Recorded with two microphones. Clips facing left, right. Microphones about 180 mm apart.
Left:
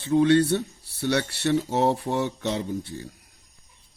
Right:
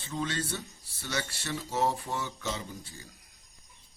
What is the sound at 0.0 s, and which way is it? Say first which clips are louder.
Speech: left 15 dB; 65° left (ahead or behind).